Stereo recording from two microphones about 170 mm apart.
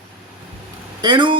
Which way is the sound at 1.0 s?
30° right (ahead or behind).